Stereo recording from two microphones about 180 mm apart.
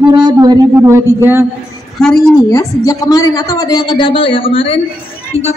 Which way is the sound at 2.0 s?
5° left (ahead or behind).